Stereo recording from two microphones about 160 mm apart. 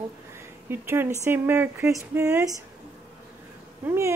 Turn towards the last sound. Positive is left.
turn(degrees=-15)  # may be behind; listen again after turning